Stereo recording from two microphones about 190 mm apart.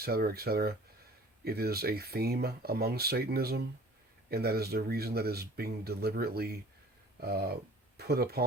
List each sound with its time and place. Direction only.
0.0 s speech: 55° right (ahead or behind)